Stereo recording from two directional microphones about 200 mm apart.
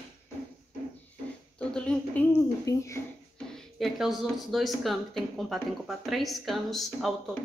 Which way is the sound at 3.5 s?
Centre (ahead or behind).